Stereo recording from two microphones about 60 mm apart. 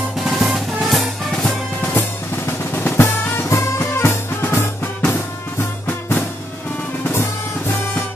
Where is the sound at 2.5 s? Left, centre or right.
Left.